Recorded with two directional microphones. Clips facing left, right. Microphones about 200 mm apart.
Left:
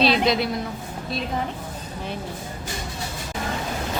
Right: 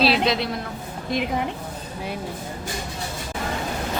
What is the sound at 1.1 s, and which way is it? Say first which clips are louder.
Speech: right 3 dB; 15° right (ahead or behind).